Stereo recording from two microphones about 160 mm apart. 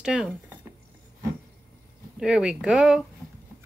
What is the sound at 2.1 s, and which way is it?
Speech, 5° right (ahead or behind).